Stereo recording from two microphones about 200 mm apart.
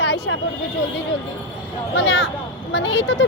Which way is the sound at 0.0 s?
60° left (ahead or behind).